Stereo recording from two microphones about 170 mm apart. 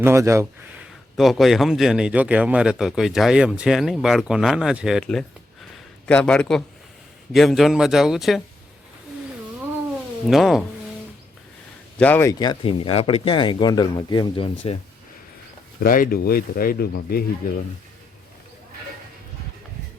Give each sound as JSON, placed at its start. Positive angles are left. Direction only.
{"t": 0.0, "sound": "speech", "side_deg": -15}
{"t": 1.1, "sound": "speech", "side_deg": 0}
{"t": 10.2, "sound": "speech", "side_deg": 0}
{"t": 11.9, "sound": "speech", "side_deg": 10}
{"t": 15.8, "sound": "speech", "side_deg": 55}